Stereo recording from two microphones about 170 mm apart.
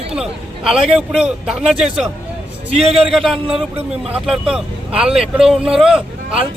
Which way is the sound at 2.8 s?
35° right (ahead or behind).